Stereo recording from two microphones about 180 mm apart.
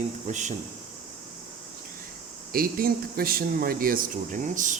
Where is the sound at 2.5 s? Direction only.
55° right (ahead or behind).